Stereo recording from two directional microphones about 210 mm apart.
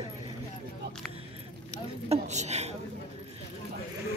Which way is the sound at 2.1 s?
35° right (ahead or behind).